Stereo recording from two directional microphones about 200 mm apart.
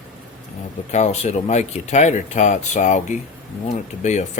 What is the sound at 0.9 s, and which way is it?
Speech, 35° left (ahead or behind).